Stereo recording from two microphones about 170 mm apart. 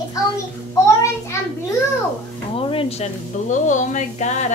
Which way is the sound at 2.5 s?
35° left (ahead or behind).